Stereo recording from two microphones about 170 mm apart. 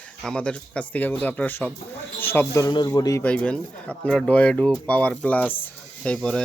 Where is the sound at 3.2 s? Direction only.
10° left (ahead or behind).